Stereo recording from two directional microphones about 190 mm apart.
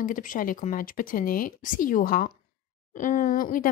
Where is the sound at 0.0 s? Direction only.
45° left (ahead or behind).